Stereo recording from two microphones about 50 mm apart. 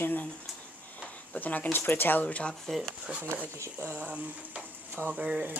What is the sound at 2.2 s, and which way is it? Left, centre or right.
Speech, left.